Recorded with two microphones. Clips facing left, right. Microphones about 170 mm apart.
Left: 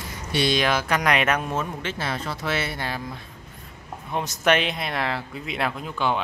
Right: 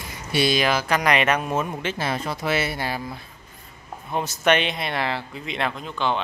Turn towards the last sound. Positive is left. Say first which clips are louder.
# even
turn(degrees=10)  # may be behind; listen again after turning